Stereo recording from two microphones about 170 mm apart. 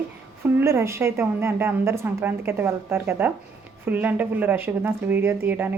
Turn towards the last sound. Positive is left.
turn(degrees=-10)  # may be behind; listen again after turning